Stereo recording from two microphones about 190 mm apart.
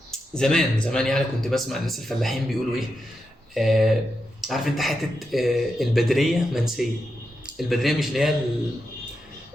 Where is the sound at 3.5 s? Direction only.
Centre (ahead or behind).